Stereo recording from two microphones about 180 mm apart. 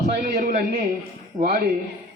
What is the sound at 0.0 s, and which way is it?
A woman's voice, 50° right (ahead or behind).